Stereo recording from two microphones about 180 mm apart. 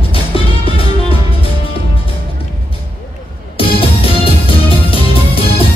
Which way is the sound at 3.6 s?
30° left (ahead or behind).